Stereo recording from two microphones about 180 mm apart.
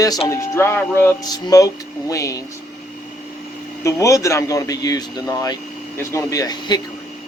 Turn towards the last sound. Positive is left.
turn(degrees=20)  # may be behind; listen again after turning